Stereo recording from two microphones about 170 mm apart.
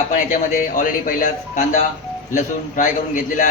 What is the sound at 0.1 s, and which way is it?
Speech, 50° left (ahead or behind).